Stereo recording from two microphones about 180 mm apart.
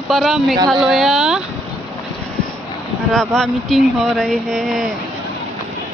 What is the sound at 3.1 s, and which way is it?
Speech, 5° left (ahead or behind).